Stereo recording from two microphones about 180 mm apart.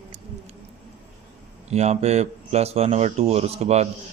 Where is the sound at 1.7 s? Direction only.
35° right (ahead or behind).